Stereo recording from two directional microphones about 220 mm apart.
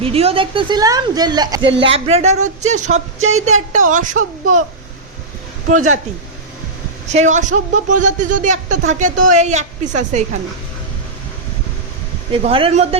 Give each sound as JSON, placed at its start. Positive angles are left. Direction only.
{"t": 0.0, "sound": "a woman's voice", "side_deg": -25}
{"t": 3.2, "sound": "speech", "side_deg": -65}
{"t": 3.4, "sound": "speech", "side_deg": -35}
{"t": 7.1, "sound": "speech", "side_deg": -30}
{"t": 12.3, "sound": "a woman's voice", "side_deg": -25}